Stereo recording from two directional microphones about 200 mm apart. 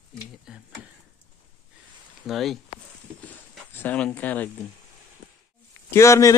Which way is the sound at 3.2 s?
10° left (ahead or behind).